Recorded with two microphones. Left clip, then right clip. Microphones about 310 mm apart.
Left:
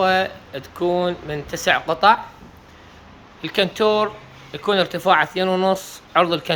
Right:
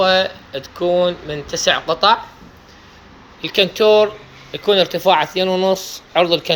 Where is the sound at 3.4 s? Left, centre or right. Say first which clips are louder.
Right 4 dB; centre.